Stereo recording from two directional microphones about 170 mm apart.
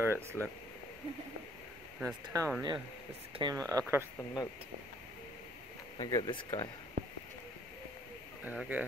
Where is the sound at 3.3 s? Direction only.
25° right (ahead or behind).